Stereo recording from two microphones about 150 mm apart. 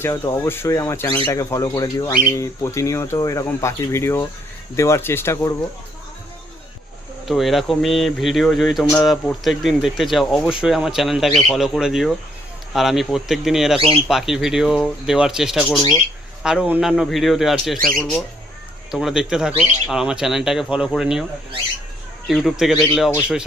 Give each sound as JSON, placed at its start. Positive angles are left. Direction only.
{"t": 0.0, "sound": "speech", "side_deg": 15}
{"t": 7.3, "sound": "speech", "side_deg": 0}
{"t": 22.3, "sound": "speech", "side_deg": 0}